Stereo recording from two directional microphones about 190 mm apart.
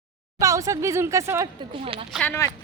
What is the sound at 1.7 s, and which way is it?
Speech, 30° right (ahead or behind).